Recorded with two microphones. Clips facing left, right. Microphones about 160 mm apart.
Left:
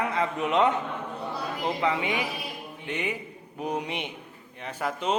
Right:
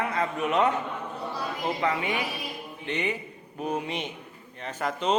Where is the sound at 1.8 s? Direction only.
15° left (ahead or behind).